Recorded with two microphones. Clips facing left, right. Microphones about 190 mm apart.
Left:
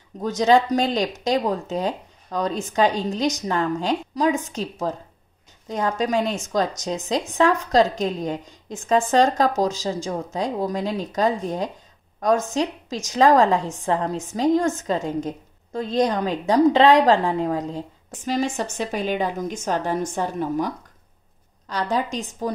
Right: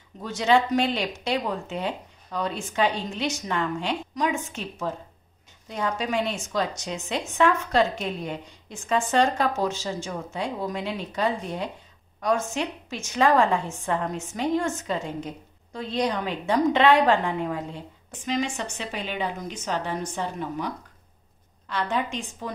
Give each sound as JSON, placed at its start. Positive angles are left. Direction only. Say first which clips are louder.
{"t": 0.2, "sound": "a woman's voice", "louder": "left 4 dB", "side_deg": 40}